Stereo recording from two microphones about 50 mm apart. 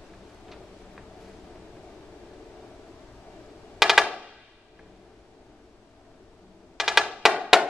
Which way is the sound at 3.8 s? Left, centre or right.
Centre.